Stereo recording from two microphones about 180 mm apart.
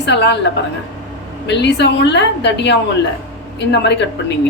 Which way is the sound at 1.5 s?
75° left (ahead or behind).